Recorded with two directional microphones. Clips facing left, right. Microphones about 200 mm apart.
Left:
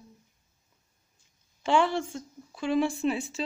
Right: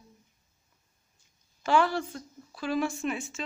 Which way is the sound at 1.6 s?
25° left (ahead or behind).